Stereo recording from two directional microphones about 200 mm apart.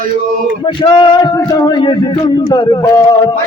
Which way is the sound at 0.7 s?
25° left (ahead or behind).